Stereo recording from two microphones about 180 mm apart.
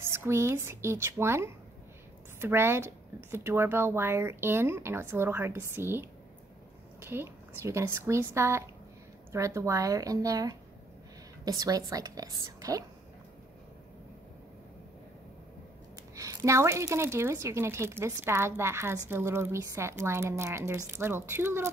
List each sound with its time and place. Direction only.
0.0 s a woman's voice: 15° right (ahead or behind)
7.1 s a woman's voice: 15° right (ahead or behind)
16.2 s a woman's voice: 15° right (ahead or behind)